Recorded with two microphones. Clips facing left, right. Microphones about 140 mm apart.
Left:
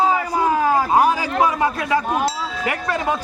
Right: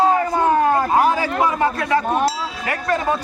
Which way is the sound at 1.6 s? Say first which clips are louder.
Right 1 dB; 15° left (ahead or behind).